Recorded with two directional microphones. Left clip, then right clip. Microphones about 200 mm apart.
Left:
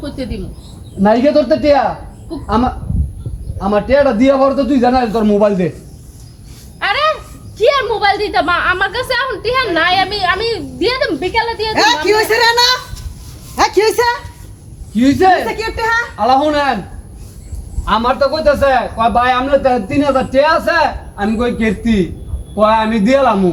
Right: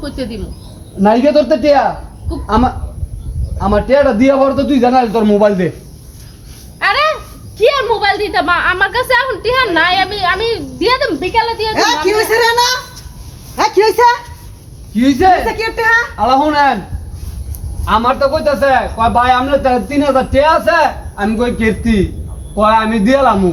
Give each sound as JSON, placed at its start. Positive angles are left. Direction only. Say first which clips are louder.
{"t": 0.0, "sound": "speech", "louder": "right 2 dB", "side_deg": -10}
{"t": 1.0, "sound": "a woman's voice", "louder": "right 1 dB", "side_deg": 5}
{"t": 6.7, "sound": "a sound", "louder": "right 2 dB", "side_deg": -10}
{"t": 7.6, "sound": "a woman's voice", "louder": "right 1 dB", "side_deg": 0}
{"t": 11.7, "sound": "a woman's voice", "louder": "left 3 dB", "side_deg": 40}
{"t": 14.9, "sound": "a man's voice", "louder": "right 1 dB", "side_deg": 10}
{"t": 15.4, "sound": "speech", "louder": "right 4 dB", "side_deg": -10}
{"t": 16.1, "sound": "speech", "louder": "right 1 dB", "side_deg": 20}
{"t": 17.8, "sound": "a man's voice", "louder": "right 1 dB", "side_deg": 15}